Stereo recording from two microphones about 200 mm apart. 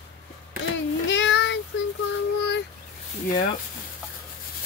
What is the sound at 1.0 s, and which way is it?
Child singing, 65° left (ahead or behind).